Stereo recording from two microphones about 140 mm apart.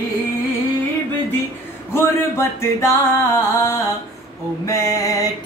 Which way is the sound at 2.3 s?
20° left (ahead or behind).